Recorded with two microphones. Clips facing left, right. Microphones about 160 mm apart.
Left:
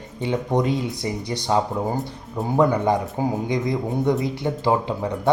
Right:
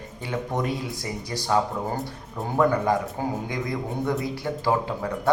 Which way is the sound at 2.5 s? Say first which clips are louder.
Left 2 dB; 20° left (ahead or behind).